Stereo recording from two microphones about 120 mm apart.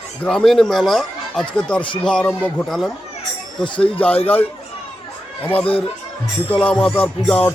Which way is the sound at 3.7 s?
50° left (ahead or behind).